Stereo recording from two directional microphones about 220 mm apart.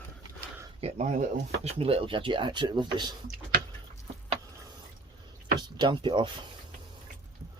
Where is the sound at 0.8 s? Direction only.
30° right (ahead or behind).